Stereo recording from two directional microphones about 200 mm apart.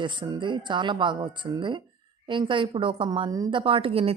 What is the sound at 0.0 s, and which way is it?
A woman's voice, 25° right (ahead or behind).